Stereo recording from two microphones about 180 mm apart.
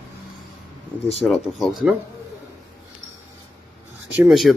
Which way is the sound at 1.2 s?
5° left (ahead or behind).